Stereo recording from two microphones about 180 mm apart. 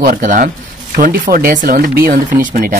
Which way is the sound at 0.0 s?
50° right (ahead or behind).